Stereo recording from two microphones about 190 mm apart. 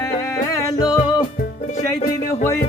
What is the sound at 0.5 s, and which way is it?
Music, 20° left (ahead or behind).